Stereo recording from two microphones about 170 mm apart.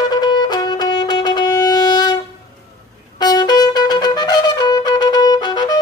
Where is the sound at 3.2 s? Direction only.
25° left (ahead or behind).